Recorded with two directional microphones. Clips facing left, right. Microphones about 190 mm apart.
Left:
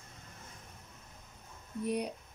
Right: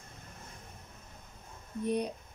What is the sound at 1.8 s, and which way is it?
Speech, 10° left (ahead or behind).